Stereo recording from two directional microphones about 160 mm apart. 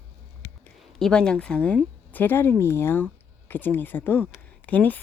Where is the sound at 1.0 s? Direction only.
5° left (ahead or behind).